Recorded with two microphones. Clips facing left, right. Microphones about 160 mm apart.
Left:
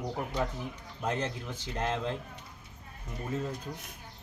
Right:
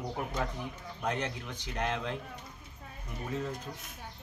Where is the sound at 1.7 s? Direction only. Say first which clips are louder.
Left 2 dB; 30° left (ahead or behind).